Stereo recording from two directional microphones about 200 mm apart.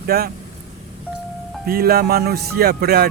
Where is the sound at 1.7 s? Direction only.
50° right (ahead or behind).